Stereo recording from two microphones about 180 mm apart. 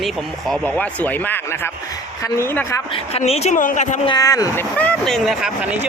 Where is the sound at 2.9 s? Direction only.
35° left (ahead or behind).